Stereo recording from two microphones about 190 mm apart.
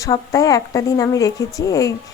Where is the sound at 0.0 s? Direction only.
15° left (ahead or behind).